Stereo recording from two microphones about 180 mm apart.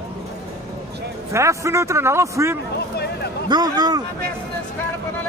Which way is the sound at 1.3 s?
15° right (ahead or behind).